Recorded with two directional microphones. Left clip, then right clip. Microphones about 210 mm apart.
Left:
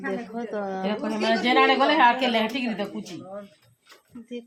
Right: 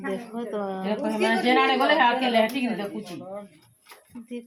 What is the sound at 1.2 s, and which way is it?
Speech, 45° left (ahead or behind).